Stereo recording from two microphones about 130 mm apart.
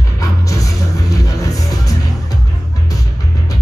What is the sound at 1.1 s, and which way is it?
Music, 25° left (ahead or behind).